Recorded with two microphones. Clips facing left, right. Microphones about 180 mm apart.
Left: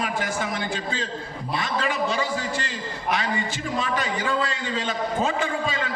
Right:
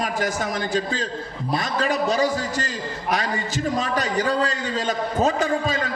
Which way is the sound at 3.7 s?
40° right (ahead or behind).